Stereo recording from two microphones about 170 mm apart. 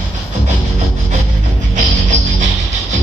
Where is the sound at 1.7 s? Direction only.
45° right (ahead or behind).